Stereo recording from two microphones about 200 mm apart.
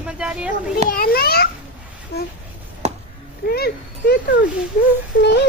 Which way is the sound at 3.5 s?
50° left (ahead or behind).